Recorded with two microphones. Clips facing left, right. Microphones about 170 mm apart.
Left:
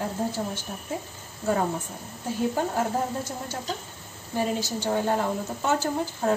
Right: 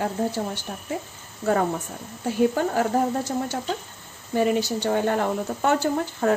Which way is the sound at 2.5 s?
75° right (ahead or behind).